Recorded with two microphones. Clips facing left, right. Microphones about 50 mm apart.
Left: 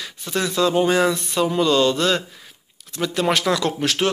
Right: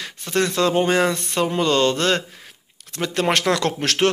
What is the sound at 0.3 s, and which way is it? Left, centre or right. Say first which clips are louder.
Speech: right 1 dB; right.